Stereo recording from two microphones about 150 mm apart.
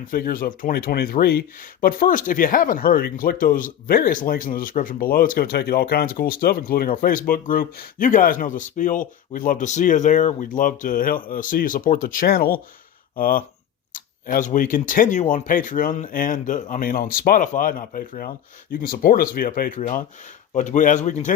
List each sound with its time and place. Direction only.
0.1 s speech: 75° left (ahead or behind); by 21.3 s 55° left (ahead or behind)